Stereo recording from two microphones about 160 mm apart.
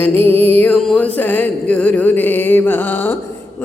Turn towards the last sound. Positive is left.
turn(degrees=15)  # may be behind; listen again after turning